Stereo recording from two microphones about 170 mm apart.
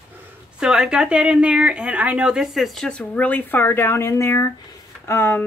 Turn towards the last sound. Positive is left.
turn(degrees=15)  # may be behind; listen again after turning